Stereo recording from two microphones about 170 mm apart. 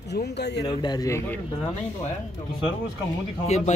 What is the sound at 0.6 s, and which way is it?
Speech, 25° left (ahead or behind).